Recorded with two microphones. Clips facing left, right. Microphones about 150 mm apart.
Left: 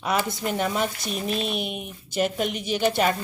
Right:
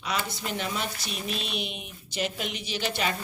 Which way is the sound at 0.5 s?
45° left (ahead or behind).